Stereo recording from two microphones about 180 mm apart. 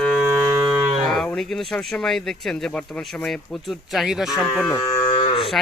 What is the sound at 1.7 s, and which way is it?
Speech, 5° left (ahead or behind).